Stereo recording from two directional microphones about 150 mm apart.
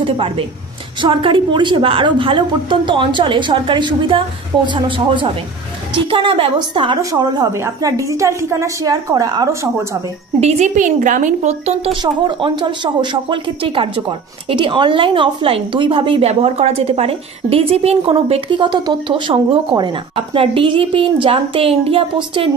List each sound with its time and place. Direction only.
0.0 s a woman's voice: 35° right (ahead or behind)
10.4 s a woman's voice: 55° right (ahead or behind)
11.9 s speech: 35° right (ahead or behind)